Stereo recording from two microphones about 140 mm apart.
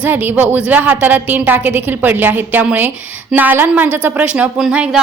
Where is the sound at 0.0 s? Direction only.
15° right (ahead or behind).